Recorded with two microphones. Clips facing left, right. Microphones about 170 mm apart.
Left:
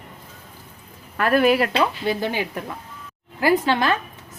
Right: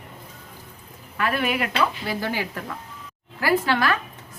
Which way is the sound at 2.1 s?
20° left (ahead or behind).